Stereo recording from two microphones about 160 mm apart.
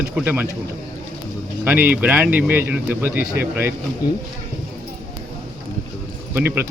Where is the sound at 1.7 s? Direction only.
10° right (ahead or behind).